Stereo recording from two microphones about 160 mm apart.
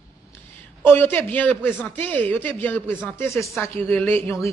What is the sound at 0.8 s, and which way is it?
Speech, 15° left (ahead or behind).